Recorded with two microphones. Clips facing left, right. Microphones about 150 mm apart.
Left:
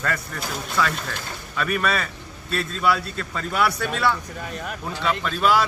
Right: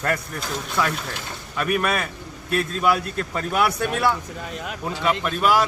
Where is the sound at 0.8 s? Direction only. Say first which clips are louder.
Left 1 dB; 15° right (ahead or behind).